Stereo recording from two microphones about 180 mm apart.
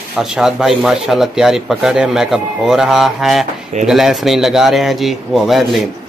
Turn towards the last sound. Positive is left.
turn(degrees=0)  # may be behind; listen again after turning